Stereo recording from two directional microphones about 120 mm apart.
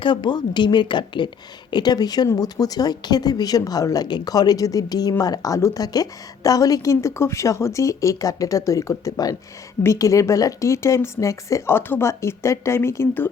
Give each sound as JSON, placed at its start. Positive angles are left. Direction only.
{"t": 0.0, "sound": "speech", "side_deg": 40}